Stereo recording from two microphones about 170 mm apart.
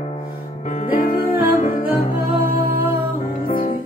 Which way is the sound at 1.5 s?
50° left (ahead or behind).